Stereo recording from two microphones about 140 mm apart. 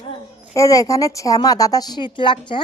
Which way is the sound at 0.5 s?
25° left (ahead or behind).